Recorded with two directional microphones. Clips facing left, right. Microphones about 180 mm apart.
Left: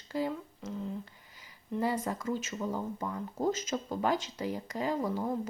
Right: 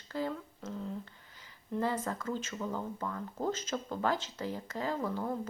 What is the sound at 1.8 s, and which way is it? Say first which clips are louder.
Speech: left 2 dB; 10° left (ahead or behind).